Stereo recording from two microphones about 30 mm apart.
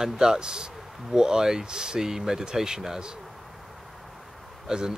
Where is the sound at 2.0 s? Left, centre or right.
Centre.